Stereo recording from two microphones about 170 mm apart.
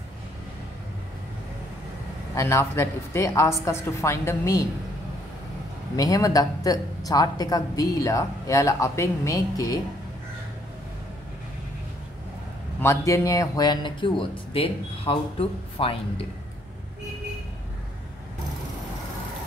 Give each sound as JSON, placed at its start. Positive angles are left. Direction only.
{"t": 2.3, "sound": "a woman's voice", "side_deg": 15}
{"t": 5.9, "sound": "speech", "side_deg": 20}
{"t": 12.8, "sound": "speech", "side_deg": 15}